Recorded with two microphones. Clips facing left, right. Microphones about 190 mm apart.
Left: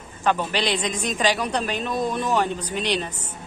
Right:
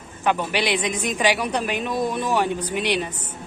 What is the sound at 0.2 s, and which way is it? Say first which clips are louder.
A man's voice: even; 15° right (ahead or behind).